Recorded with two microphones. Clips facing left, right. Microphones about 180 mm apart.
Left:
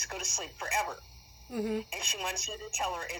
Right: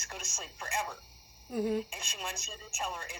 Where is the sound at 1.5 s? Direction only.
25° right (ahead or behind).